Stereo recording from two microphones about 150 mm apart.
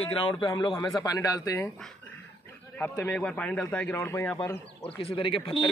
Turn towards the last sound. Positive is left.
turn(degrees=35)  # may be behind; listen again after turning